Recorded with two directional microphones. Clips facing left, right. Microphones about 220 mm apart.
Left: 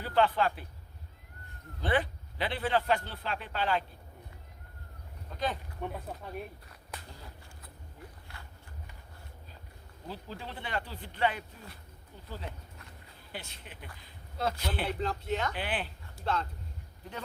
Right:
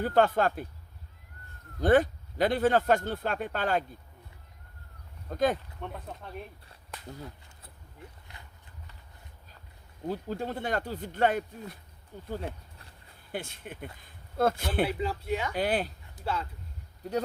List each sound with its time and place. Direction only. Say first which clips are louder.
0.0 s a man's voice: right 3 dB; 45° right (ahead or behind)
1.8 s a man's voice: right 8 dB; 45° right (ahead or behind)
5.3 s a man's voice: right 8 dB; 45° right (ahead or behind)
5.8 s speech: left 2 dB; 5° left (ahead or behind)
8.3 s a sound: left 1 dB; 20° right (ahead or behind)
10.1 s a man's voice: right 9 dB; 45° right (ahead or behind)
13.3 s a man's voice: right 8 dB; 50° right (ahead or behind)
14.8 s speech: right 2 dB; 5° right (ahead or behind)
15.5 s speech: right 7 dB; 40° right (ahead or behind)
16.1 s speech: even; 10° right (ahead or behind)